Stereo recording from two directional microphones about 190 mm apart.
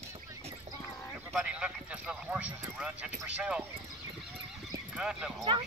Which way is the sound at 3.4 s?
5° right (ahead or behind).